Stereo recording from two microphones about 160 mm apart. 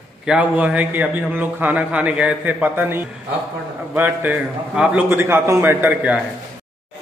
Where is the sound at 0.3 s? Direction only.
10° right (ahead or behind).